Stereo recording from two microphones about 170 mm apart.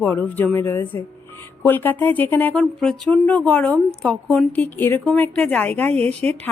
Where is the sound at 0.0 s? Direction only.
10° left (ahead or behind).